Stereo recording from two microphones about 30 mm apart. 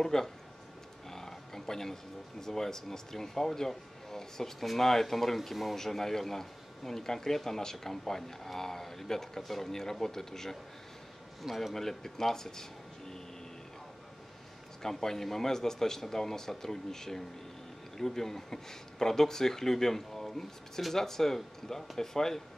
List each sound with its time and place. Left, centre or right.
0.0 s a man's voice: centre
1.0 s a sound: centre
2.4 s a man's voice: centre
11.4 s speech: centre
11.7 s a man's voice: centre
14.8 s a man's voice: centre